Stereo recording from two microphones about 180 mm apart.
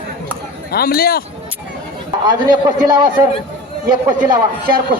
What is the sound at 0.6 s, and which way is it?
Speech, 55° left (ahead or behind).